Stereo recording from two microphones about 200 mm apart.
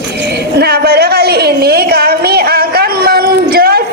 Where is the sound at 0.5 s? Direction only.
55° right (ahead or behind).